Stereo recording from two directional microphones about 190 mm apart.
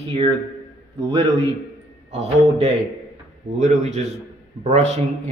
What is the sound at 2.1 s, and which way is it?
A man's voice, 35° right (ahead or behind).